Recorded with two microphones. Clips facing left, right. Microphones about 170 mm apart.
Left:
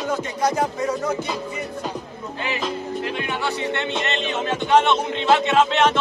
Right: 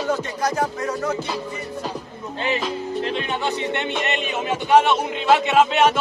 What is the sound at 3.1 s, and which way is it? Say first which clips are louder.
Speech: right 1 dB; 15° right (ahead or behind).